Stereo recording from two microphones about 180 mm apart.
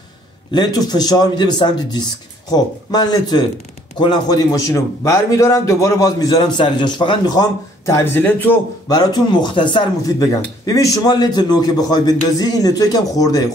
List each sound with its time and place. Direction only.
0.5 s speech: 20° left (ahead or behind)
8.8 s speech: 25° left (ahead or behind)